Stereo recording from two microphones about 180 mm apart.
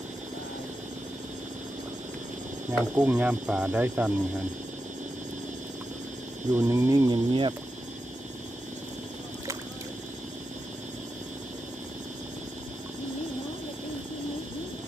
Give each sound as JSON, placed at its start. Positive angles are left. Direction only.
{"t": 2.6, "sound": "speech", "side_deg": -5}
{"t": 6.6, "sound": "speech", "side_deg": -15}